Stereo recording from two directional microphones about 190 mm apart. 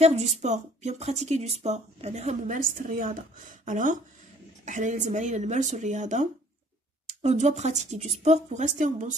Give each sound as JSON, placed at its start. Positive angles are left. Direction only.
{"t": 0.0, "sound": "speech", "side_deg": -35}